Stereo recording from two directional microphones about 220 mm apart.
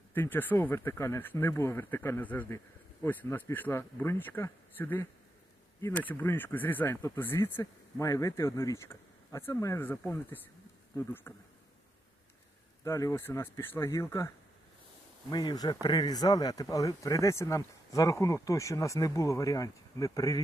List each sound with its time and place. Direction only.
0.1 s speech: 10° left (ahead or behind)
12.8 s speech: 15° left (ahead or behind)
15.3 s speech: 20° left (ahead or behind)